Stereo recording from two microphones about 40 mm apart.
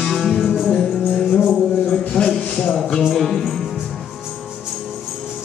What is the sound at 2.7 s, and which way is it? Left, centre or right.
Music, centre.